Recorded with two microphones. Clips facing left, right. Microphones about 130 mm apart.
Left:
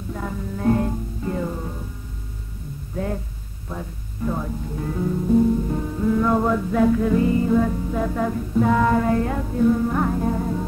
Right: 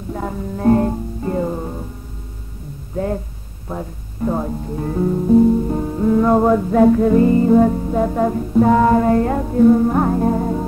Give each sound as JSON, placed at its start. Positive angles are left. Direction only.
{"t": 0.1, "sound": "music", "side_deg": -40}
{"t": 3.6, "sound": "music", "side_deg": -40}